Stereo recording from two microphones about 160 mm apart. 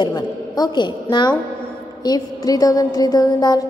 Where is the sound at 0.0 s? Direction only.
25° left (ahead or behind).